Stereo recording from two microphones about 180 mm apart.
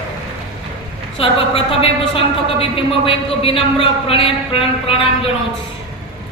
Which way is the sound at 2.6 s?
30° left (ahead or behind).